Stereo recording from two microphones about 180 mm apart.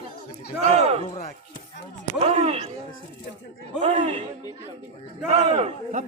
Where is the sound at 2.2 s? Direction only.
35° right (ahead or behind).